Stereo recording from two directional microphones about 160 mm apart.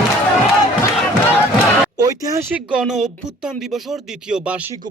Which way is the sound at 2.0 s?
20° right (ahead or behind).